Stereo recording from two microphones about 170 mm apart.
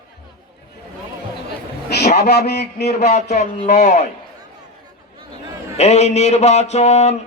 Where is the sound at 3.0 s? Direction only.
40° left (ahead or behind).